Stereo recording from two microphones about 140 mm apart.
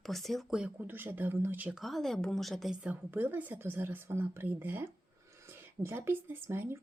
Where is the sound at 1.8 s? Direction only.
Centre (ahead or behind).